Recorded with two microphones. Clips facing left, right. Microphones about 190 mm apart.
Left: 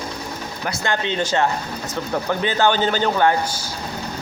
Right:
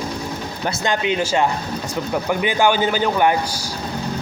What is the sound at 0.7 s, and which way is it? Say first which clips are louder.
Speech: right 3 dB; 15° right (ahead or behind).